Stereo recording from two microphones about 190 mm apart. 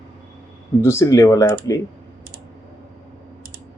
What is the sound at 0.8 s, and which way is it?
Speech, 15° left (ahead or behind).